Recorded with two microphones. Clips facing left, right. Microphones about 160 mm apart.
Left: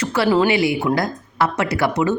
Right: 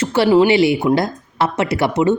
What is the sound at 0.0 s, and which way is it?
A woman's voice, 25° right (ahead or behind).